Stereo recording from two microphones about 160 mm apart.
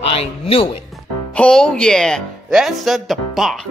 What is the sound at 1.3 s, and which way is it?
Speech, 5° left (ahead or behind).